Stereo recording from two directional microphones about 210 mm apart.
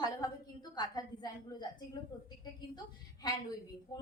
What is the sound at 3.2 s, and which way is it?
Speech, 20° left (ahead or behind).